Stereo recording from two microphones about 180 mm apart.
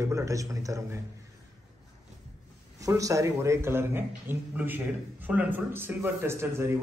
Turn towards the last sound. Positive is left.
turn(degrees=-15)  # may be behind; listen again after turning